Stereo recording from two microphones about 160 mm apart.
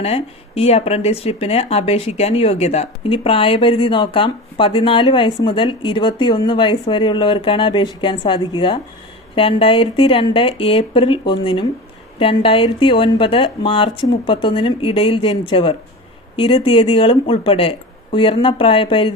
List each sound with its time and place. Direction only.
0.0 s speech: 40° left (ahead or behind)